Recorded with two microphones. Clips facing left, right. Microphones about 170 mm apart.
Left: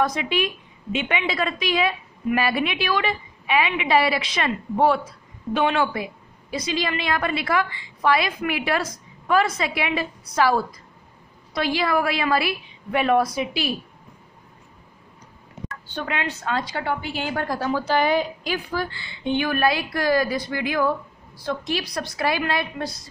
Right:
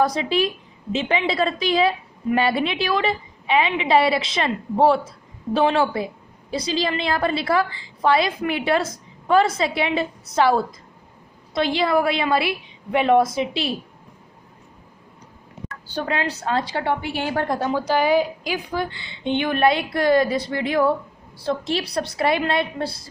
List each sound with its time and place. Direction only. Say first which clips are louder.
0.0 s a woman's voice: right 3 dB; 30° right (ahead or behind)
15.9 s a woman's voice: right 4 dB; 35° right (ahead or behind)